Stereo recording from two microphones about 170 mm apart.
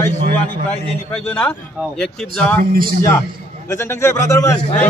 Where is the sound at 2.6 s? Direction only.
60° right (ahead or behind).